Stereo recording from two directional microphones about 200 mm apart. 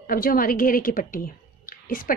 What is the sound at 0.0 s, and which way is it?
A woman's voice, 45° left (ahead or behind).